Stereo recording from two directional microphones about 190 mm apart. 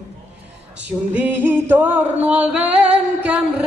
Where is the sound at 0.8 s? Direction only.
10° right (ahead or behind).